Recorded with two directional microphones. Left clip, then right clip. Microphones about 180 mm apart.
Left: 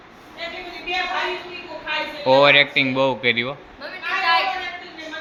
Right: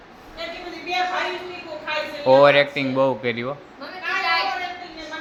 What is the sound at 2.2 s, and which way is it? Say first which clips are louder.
Speech: even; centre (ahead or behind).